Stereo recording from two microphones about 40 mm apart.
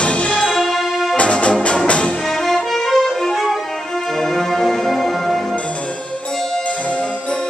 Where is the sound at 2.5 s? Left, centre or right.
Centre.